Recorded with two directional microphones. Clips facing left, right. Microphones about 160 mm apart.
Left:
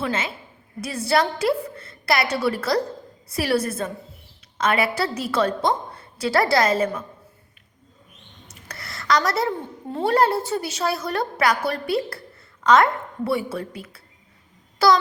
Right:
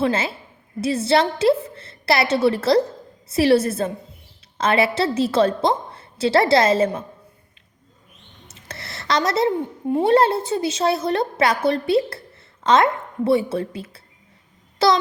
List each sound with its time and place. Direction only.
0.0 s a woman's voice: 30° right (ahead or behind)
8.6 s a sound: 25° right (ahead or behind)
9.9 s a woman's voice: 20° right (ahead or behind)